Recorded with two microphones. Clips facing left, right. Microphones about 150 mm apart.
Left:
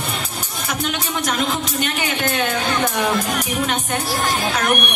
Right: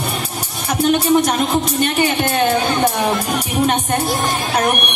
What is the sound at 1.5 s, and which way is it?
Music, 35° right (ahead or behind).